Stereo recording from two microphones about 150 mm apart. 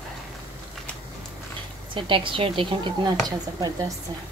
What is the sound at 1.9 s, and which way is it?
Speech, 35° right (ahead or behind).